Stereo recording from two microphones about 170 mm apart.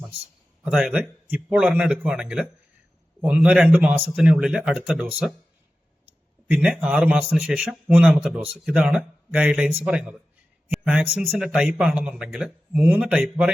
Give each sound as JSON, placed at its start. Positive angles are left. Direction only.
{"t": 0.6, "sound": "speech", "side_deg": -5}
{"t": 6.5, "sound": "a man's voice", "side_deg": -5}